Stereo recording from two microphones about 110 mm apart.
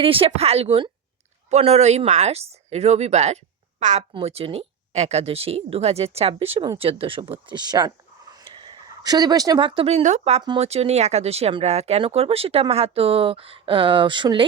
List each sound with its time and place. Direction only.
0.0 s speech: 55° right (ahead or behind)
1.5 s a woman's voice: 80° right
4.1 s speech: 65° right (ahead or behind); by 9.6 s 35° right (ahead or behind)
9.6 s speech: 55° right (ahead or behind)
9.9 s speech: 85° right
10.6 s speech: 70° right (ahead or behind); by 14.4 s 45° right (ahead or behind)